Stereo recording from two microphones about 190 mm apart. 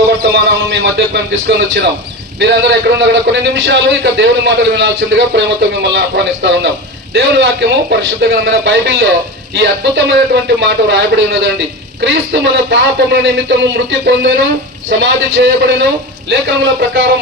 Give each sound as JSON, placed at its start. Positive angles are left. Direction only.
{"t": 0.7, "sound": "a man's voice", "side_deg": -65}